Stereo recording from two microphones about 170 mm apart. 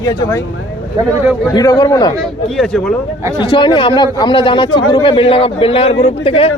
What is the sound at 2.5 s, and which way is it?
Speech, centre (ahead or behind).